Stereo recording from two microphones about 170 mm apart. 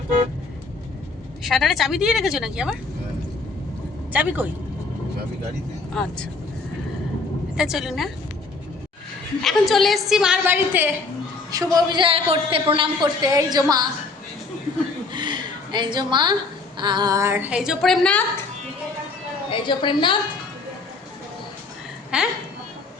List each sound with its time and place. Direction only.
1.5 s a woman's voice: centre (ahead or behind)
4.1 s a woman's voice: 10° right (ahead or behind)
6.0 s a woman's voice: 5° left (ahead or behind)
7.5 s a woman's voice: 5° right (ahead or behind)
9.4 s a woman's voice: centre (ahead or behind)
11.5 s a woman's voice: 20° right (ahead or behind)
15.1 s a sound: 25° right (ahead or behind)
16.7 s a woman's voice: 25° right (ahead or behind); by 18.2 s 5° left (ahead or behind)
19.5 s a woman's voice: 30° left (ahead or behind)
22.1 s a woman's voice: 5° right (ahead or behind)